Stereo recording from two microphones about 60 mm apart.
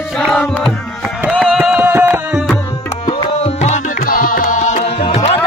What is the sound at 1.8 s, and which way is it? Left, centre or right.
Music, right.